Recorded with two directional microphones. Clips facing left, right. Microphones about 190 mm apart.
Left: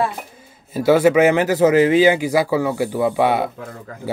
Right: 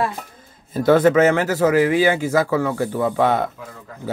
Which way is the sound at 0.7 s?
10° left (ahead or behind).